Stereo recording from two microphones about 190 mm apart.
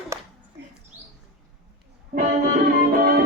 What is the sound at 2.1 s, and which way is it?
Music, 45° right (ahead or behind).